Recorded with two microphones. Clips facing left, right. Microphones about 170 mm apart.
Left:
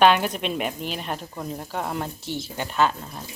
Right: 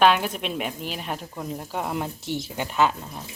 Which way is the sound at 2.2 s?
20° right (ahead or behind).